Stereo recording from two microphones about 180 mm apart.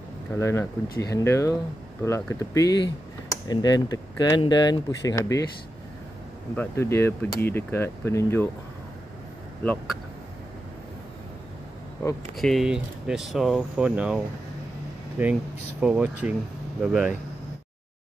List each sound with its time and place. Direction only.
0.4 s speech: 15° left (ahead or behind)
6.5 s speech: 10° left (ahead or behind)
12.0 s speech: 15° left (ahead or behind)
12.4 s speech: centre (ahead or behind)